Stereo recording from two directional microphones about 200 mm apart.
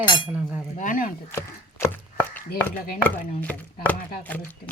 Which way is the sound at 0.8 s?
40° left (ahead or behind).